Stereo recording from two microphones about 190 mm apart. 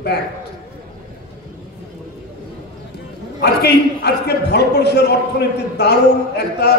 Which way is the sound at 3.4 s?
60° left (ahead or behind).